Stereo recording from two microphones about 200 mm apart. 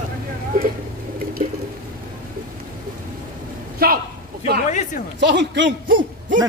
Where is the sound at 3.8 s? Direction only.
50° right (ahead or behind).